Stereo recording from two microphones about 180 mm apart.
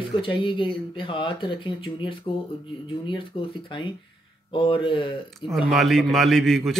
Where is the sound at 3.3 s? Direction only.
35° left (ahead or behind).